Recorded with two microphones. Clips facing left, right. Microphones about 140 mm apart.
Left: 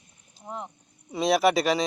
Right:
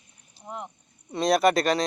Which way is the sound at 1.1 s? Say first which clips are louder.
Right 1 dB; centre (ahead or behind).